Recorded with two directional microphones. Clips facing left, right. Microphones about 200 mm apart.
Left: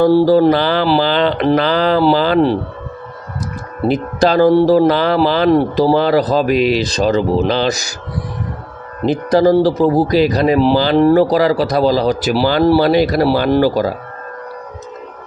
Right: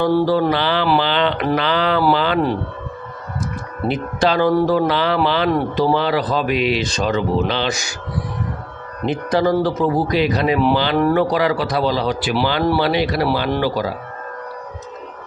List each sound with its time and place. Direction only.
0.0 s speech: 35° left (ahead or behind)
3.8 s speech: 40° left (ahead or behind)
9.0 s speech: 35° left (ahead or behind)